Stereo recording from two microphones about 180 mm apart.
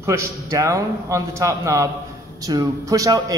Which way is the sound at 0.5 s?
15° right (ahead or behind).